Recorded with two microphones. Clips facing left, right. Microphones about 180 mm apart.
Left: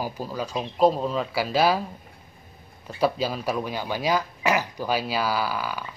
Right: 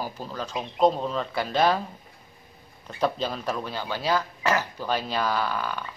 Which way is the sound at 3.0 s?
10° left (ahead or behind).